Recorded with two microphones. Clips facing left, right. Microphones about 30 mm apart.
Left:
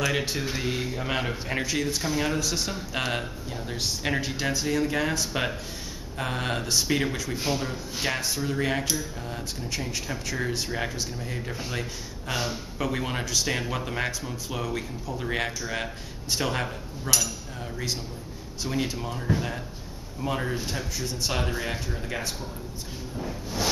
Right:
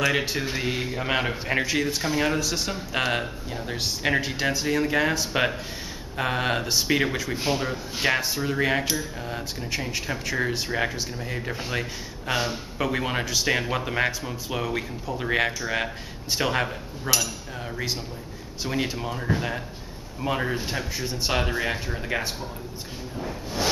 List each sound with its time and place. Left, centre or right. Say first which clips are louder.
0.0 s speech: right 3 dB; centre
18.6 s speech: right 2 dB; centre
23.1 s a sound: right 2 dB; centre